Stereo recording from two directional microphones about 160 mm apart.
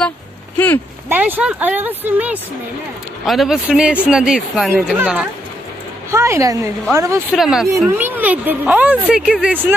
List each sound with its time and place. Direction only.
1.0 s a woman's voice: 10° right (ahead or behind)
7.3 s speech: centre (ahead or behind)